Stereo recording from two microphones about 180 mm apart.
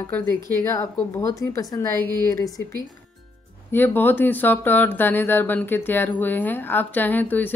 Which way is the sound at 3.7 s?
10° left (ahead or behind).